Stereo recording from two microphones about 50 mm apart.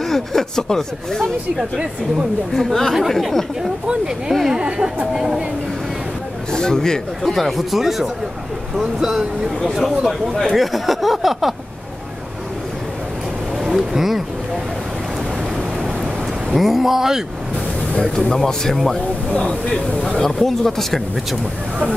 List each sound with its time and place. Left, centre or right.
0.0 s speech: centre
2.5 s speech: centre
3.8 s speech: centre
5.1 s speech: centre
6.5 s speech: centre
10.5 s a sound: centre
13.6 s speech: centre
16.5 s speech: centre
18.0 s speech: centre